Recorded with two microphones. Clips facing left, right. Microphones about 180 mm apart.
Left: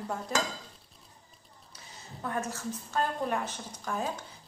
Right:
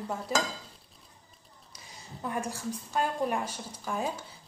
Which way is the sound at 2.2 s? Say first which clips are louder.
Right 1 dB; 15° right (ahead or behind).